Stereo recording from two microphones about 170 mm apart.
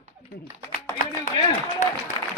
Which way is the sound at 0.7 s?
50° left (ahead or behind).